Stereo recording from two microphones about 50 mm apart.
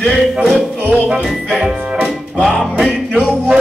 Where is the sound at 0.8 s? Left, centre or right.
Right.